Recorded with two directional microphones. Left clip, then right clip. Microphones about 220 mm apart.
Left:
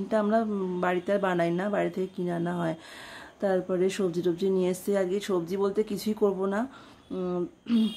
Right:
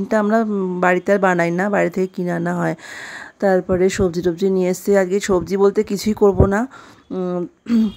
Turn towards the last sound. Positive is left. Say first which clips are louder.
# right 8 dB
turn(degrees=-35)  # may be behind; listen again after turning